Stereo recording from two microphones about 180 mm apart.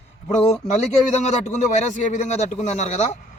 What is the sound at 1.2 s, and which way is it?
A man's voice, 40° left (ahead or behind).